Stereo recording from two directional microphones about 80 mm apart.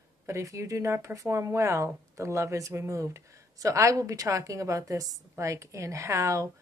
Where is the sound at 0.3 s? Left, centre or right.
Right.